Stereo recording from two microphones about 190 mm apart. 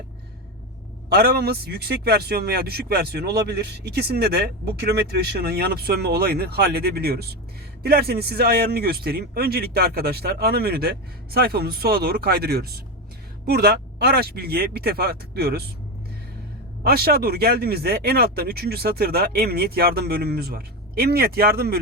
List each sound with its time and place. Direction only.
1.1 s a man's voice: 55° right (ahead or behind)
16.8 s a man's voice: 55° right (ahead or behind)